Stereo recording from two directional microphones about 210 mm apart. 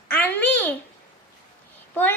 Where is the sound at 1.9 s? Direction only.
10° left (ahead or behind).